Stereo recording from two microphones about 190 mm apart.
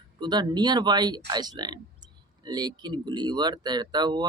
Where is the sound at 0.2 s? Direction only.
20° right (ahead or behind).